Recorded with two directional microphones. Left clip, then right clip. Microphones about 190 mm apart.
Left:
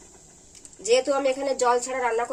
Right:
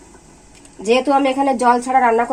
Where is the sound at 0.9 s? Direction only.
40° right (ahead or behind).